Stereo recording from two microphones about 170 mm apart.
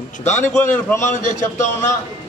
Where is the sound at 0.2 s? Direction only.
45° left (ahead or behind).